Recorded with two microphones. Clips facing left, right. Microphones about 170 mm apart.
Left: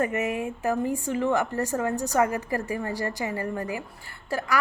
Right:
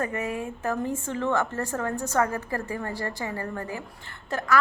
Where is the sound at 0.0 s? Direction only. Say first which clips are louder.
Left 3 dB; 20° left (ahead or behind).